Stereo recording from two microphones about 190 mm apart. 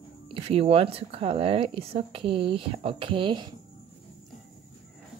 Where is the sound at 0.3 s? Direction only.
30° right (ahead or behind).